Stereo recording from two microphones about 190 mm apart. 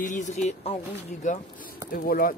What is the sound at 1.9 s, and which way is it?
Speech, 50° left (ahead or behind).